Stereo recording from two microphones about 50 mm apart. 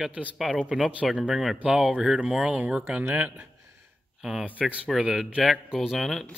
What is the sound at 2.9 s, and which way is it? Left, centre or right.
Speech, right.